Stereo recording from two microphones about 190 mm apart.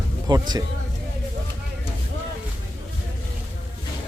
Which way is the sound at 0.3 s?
20° right (ahead or behind).